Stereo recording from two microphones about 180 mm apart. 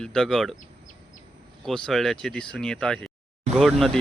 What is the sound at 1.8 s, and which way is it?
Speech, centre (ahead or behind).